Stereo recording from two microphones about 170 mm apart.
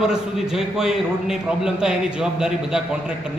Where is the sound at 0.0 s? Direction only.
5° right (ahead or behind).